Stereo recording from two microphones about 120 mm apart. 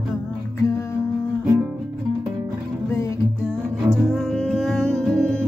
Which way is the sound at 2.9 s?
25° left (ahead or behind).